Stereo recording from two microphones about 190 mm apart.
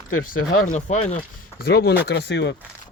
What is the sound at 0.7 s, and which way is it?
Speech, 40° left (ahead or behind).